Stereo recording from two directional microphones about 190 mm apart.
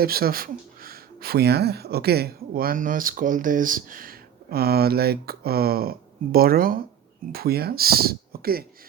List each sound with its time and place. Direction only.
0.0 s speech: 50° right (ahead or behind)